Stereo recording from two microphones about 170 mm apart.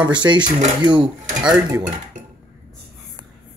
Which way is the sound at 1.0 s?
5° right (ahead or behind).